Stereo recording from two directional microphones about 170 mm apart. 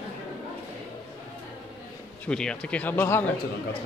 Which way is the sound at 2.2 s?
5° left (ahead or behind).